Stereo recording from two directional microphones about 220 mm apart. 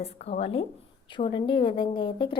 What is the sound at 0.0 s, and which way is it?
A woman's voice, 25° left (ahead or behind).